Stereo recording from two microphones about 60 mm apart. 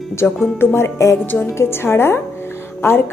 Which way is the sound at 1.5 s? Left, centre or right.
Left.